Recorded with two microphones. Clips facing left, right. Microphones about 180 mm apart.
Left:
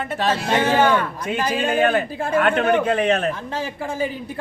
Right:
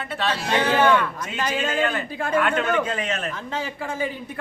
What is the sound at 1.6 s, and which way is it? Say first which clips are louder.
A man's voice: left 7 dB; 55° left (ahead or behind).